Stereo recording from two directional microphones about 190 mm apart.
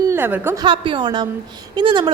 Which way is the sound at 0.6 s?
25° right (ahead or behind).